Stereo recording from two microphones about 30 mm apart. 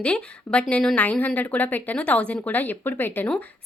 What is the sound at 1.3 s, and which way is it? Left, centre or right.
Speech, left.